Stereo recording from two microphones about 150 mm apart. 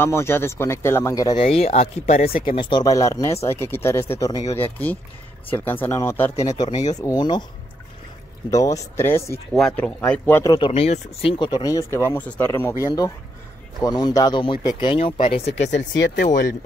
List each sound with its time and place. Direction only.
0.0 s speech: 15° left (ahead or behind)
1.3 s speech: 40° left (ahead or behind)
8.5 s speech: 20° left (ahead or behind)
9.5 s speech: 5° left (ahead or behind)
10.4 s speech: 25° left (ahead or behind)
10.7 s speech: 45° left (ahead or behind)
16.2 s speech: 90° left